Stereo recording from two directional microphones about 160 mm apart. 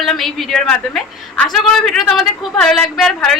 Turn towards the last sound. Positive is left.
turn(degrees=5)  # may be behind; listen again after turning